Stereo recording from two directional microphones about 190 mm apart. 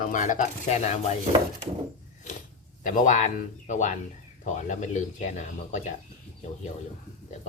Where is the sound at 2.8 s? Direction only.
45° left (ahead or behind).